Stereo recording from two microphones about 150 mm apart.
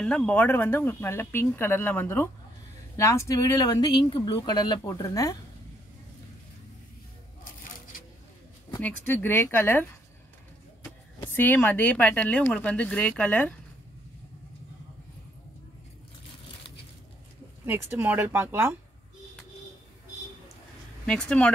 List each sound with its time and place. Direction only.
0.0 s speech: 5° left (ahead or behind); by 5.4 s 25° left (ahead or behind)
8.8 s speech: 15° left (ahead or behind)
11.1 s speech: 15° left (ahead or behind)
17.6 s speech: 15° right (ahead or behind)
21.0 s speech: 5° left (ahead or behind)